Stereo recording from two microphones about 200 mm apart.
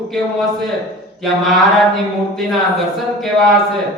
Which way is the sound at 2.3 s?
Centre (ahead or behind).